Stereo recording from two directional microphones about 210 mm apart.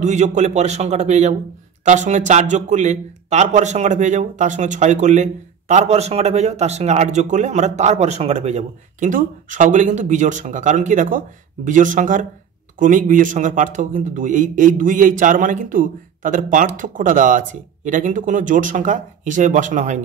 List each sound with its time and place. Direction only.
0.0 s speech: 35° right (ahead or behind)